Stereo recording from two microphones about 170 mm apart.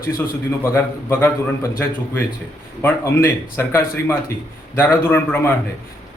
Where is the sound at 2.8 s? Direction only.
15° left (ahead or behind).